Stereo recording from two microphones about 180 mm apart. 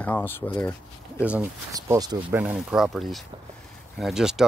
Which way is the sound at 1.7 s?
20° right (ahead or behind).